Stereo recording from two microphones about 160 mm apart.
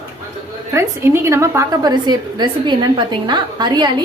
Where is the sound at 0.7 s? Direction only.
15° right (ahead or behind).